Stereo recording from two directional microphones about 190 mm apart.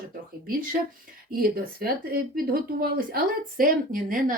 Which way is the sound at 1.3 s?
50° right (ahead or behind).